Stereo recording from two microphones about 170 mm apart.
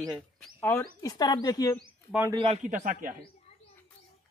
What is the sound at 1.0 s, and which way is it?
Speech, 20° left (ahead or behind).